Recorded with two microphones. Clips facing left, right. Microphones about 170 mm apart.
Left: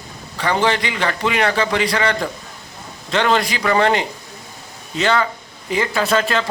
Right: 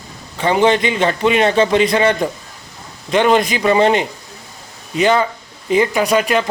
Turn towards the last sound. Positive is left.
turn(degrees=-15)  # may be behind; listen again after turning